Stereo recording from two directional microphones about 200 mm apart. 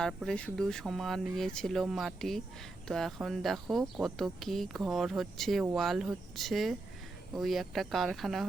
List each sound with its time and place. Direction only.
0.0 s speech: centre (ahead or behind)